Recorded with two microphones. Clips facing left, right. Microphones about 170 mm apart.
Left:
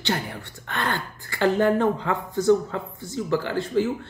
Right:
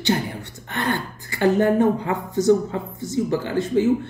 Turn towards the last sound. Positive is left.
turn(degrees=-20)  # may be behind; listen again after turning